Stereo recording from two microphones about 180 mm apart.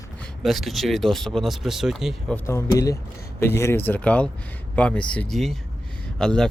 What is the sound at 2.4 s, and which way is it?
Speech, 15° left (ahead or behind).